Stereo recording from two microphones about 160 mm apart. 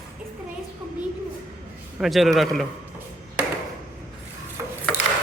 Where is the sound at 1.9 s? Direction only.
Centre (ahead or behind).